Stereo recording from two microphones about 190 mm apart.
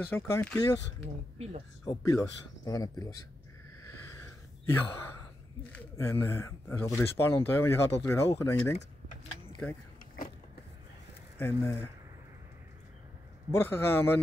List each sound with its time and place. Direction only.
0.1 s speech: 10° left (ahead or behind)
1.9 s speech: 20° left (ahead or behind)
3.8 s gasp: 15° left (ahead or behind)
5.7 s speech: 10° left (ahead or behind)
11.3 s speech: 10° left (ahead or behind)
13.5 s speech: 15° left (ahead or behind)